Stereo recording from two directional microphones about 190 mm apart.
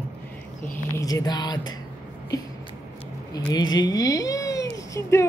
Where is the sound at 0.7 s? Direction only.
20° left (ahead or behind).